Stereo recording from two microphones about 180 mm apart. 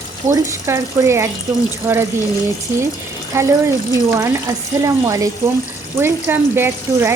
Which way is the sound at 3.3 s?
15° right (ahead or behind).